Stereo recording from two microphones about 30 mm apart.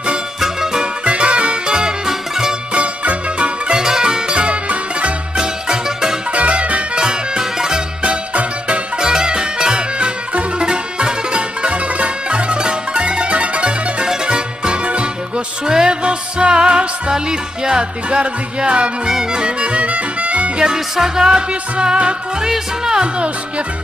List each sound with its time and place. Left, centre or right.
0.4 s music: centre
1.0 s music: right
2.0 s music: centre
2.7 s music: right
3.8 s music: right
5.4 s music: right
6.3 s music: right
7.0 s music: right
8.0 s music: right
8.9 s music: right
15.6 s music: right
19.6 s music: right
20.5 s music: right
21.4 s music: right